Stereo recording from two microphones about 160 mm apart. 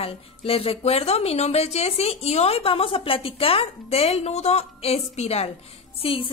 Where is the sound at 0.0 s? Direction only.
35° left (ahead or behind).